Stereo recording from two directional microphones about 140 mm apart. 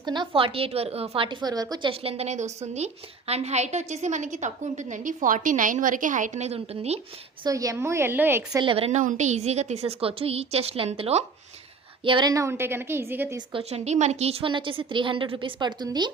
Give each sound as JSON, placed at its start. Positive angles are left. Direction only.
{"t": 0.0, "sound": "a woman's voice", "side_deg": -35}
{"t": 1.9, "sound": "a woman's voice", "side_deg": -45}
{"t": 7.4, "sound": "a woman's voice", "side_deg": -25}
{"t": 8.6, "sound": "a woman's voice", "side_deg": -40}
{"t": 9.0, "sound": "a woman's voice", "side_deg": -60}
{"t": 12.0, "sound": "a woman's voice", "side_deg": -35}
{"t": 12.3, "sound": "a woman's voice", "side_deg": -20}
{"t": 13.5, "sound": "a woman's voice", "side_deg": -45}